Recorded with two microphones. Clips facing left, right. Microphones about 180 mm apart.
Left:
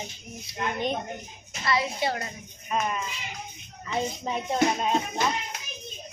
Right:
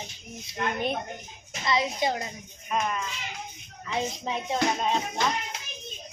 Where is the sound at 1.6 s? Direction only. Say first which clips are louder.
Even; 20° right (ahead or behind).